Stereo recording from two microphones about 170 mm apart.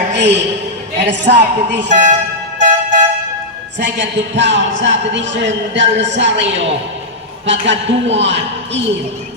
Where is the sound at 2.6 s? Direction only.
45° right (ahead or behind).